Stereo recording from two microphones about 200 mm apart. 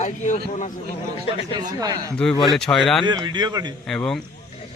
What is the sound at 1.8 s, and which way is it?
Speech, 20° right (ahead or behind).